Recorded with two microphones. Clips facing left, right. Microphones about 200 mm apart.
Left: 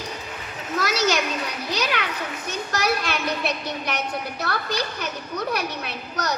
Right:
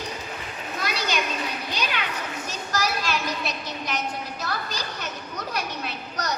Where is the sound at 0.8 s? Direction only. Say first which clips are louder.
Left 6 dB; 80° left.